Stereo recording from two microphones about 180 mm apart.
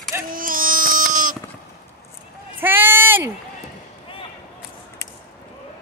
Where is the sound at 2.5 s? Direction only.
10° right (ahead or behind).